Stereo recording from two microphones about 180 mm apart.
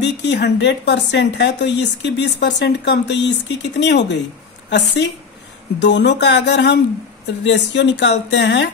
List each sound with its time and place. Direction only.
0.0 s speech: 70° left (ahead or behind)